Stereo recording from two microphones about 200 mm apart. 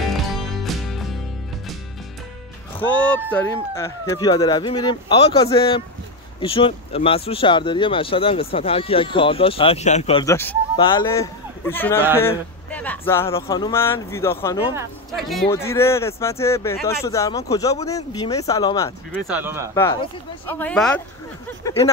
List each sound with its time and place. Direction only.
0.0 s music: centre (ahead or behind)
2.8 s speech: 5° left (ahead or behind); by 10.2 s 30° left (ahead or behind)
10.2 s speech: 15° left (ahead or behind)
15.1 s speech: centre (ahead or behind)
15.5 s speech: 15° left (ahead or behind)
19.2 s speech: 10° right (ahead or behind)
19.7 s speech: 15° left (ahead or behind)